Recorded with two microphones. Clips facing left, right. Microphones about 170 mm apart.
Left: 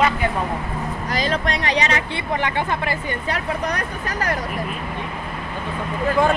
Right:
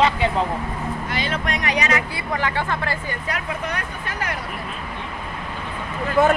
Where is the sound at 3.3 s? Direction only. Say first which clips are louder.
Left 3 dB; 40° left (ahead or behind).